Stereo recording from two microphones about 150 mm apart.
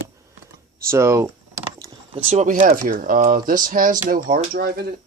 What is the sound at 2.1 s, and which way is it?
Speech, 50° right (ahead or behind).